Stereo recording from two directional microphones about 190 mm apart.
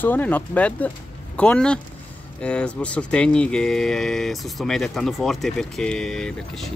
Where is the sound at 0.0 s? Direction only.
10° left (ahead or behind).